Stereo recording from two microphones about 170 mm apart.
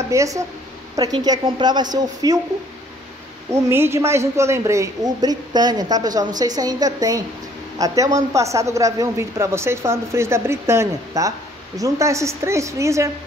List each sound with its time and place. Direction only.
0.1 s a woman's voice: 20° right (ahead or behind)
3.6 s a woman's voice: 15° right (ahead or behind)